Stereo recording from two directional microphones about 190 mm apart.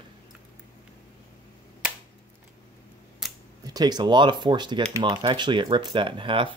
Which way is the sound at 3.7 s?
20° right (ahead or behind).